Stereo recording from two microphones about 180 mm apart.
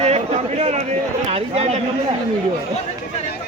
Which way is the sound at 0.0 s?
35° right (ahead or behind).